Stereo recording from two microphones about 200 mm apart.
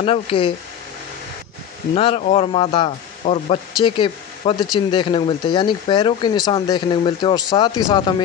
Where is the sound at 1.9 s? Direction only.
30° left (ahead or behind).